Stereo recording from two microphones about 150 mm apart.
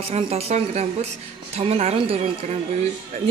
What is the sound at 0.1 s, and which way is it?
A woman's voice, 45° right (ahead or behind).